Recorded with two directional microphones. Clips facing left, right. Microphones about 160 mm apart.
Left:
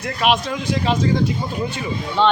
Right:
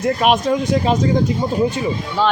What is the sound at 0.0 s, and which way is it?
Speech, 45° right (ahead or behind).